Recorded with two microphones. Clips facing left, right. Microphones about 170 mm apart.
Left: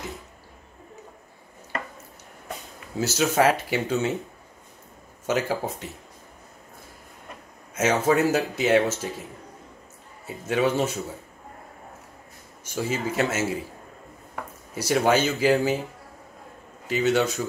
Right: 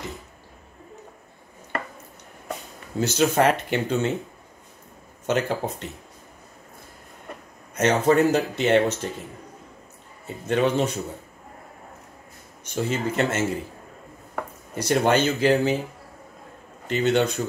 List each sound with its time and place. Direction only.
3.0 s speech: 5° left (ahead or behind)
5.2 s speech: 5° left (ahead or behind)
7.7 s speech: 5° left (ahead or behind)
10.2 s speech: 5° left (ahead or behind)
12.6 s speech: 5° left (ahead or behind)
14.7 s speech: 5° left (ahead or behind)
16.8 s speech: 5° left (ahead or behind)